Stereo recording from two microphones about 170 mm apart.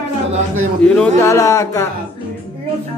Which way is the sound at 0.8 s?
5° left (ahead or behind).